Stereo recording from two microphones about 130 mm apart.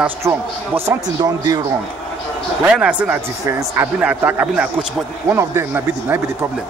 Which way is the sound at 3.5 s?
20° right (ahead or behind).